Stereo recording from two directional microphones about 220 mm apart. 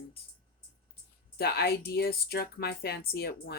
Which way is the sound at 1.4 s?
45° left (ahead or behind).